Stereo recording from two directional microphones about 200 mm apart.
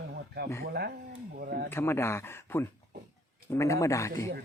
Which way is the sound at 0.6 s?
50° right (ahead or behind).